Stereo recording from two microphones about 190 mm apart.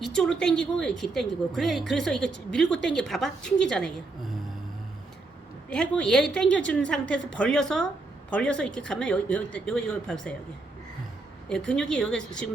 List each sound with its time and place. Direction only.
0.0 s a woman's voice: 5° left (ahead or behind)
5.7 s a woman's voice: 5° left (ahead or behind)
11.4 s a woman's voice: 5° left (ahead or behind)